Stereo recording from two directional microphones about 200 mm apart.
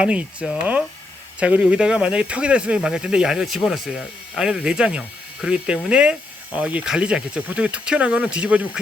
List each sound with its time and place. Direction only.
0.0 s speech: 5° right (ahead or behind)